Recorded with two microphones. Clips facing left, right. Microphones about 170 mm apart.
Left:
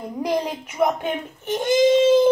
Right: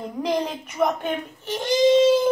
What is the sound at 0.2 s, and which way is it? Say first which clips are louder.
Speech: left 1 dB; 10° left (ahead or behind).